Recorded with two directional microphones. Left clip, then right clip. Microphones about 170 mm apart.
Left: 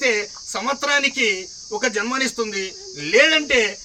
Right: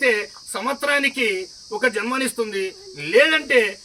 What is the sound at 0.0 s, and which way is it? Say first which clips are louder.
A man's voice: right 1 dB; 20° left (ahead or behind).